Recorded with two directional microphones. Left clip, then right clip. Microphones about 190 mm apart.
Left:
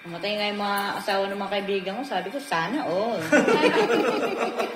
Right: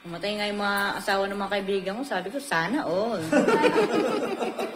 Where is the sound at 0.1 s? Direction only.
20° right (ahead or behind).